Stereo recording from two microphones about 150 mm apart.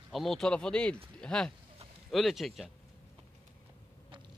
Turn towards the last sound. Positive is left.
turn(degrees=-35)  # may be behind; listen again after turning